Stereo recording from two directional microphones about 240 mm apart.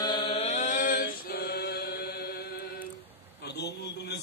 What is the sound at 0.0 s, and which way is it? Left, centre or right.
Chant, centre.